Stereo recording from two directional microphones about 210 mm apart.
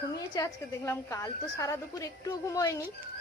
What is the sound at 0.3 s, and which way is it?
A woman's voice, 15° left (ahead or behind).